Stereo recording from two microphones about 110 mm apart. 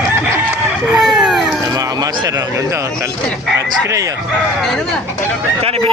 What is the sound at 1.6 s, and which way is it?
Speech, 30° right (ahead or behind).